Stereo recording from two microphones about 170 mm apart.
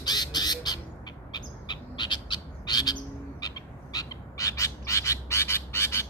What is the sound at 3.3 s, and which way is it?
Bird, 25° left (ahead or behind).